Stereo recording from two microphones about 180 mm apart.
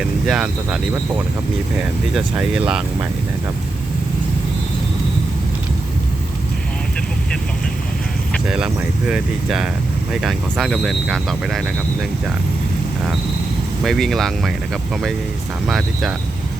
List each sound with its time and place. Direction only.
0.3 s speech: 5° right (ahead or behind)
8.3 s speech: 5° right (ahead or behind)
13.8 s speech: centre (ahead or behind)